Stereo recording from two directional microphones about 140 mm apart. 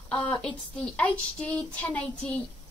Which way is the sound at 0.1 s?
10° left (ahead or behind).